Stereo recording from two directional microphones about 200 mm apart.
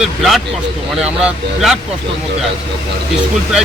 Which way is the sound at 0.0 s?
Centre (ahead or behind).